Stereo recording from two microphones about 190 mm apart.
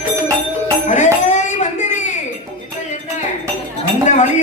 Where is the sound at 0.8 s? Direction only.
40° left (ahead or behind).